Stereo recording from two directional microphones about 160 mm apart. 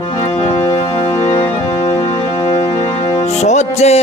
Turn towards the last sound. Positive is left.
turn(degrees=40)  # may be behind; listen again after turning